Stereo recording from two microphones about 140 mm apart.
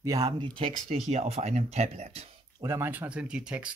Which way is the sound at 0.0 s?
25° right (ahead or behind).